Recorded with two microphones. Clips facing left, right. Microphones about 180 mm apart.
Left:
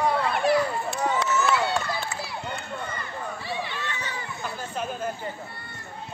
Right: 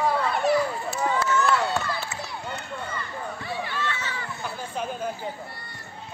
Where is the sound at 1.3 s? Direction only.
5° left (ahead or behind).